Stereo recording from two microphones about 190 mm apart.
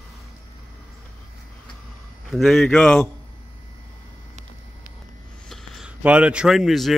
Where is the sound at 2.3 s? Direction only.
Centre (ahead or behind).